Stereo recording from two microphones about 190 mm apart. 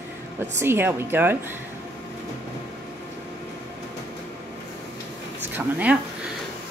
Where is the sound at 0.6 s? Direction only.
10° right (ahead or behind).